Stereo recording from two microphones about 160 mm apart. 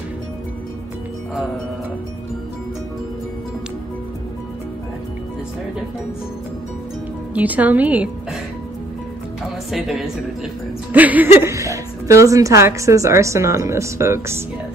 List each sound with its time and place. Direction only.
7.3 s speech: 10° right (ahead or behind)
9.7 s a woman's voice: centre (ahead or behind)